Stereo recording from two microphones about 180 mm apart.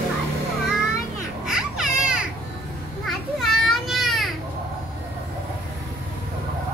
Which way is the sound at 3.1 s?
Centre (ahead or behind).